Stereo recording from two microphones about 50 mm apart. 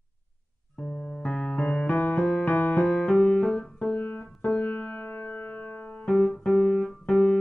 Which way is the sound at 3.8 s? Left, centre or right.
Left.